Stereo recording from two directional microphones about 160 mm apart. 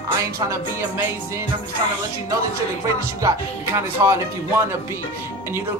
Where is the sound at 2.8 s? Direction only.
20° right (ahead or behind).